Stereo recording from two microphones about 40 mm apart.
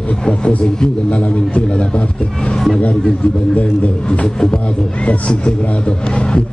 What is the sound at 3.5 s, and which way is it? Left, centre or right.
Speech, left.